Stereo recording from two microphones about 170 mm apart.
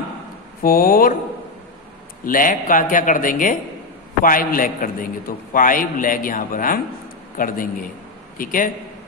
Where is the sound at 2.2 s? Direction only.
55° left (ahead or behind).